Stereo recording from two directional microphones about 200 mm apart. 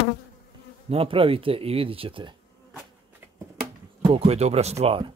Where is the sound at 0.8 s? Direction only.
30° right (ahead or behind).